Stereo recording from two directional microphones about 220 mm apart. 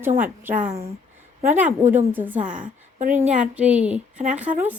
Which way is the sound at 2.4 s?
35° right (ahead or behind).